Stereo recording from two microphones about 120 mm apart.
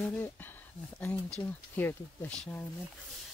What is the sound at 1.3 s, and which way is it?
Speech, 15° left (ahead or behind).